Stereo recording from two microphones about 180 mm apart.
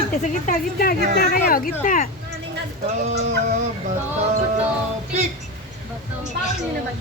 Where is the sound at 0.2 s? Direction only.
50° left (ahead or behind).